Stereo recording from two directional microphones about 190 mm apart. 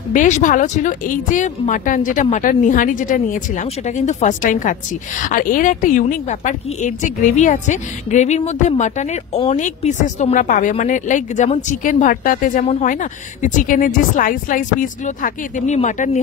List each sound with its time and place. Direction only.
0.1 s a woman's voice: 45° left (ahead or behind)